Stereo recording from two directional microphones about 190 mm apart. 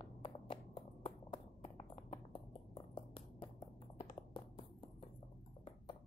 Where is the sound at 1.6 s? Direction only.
30° left (ahead or behind).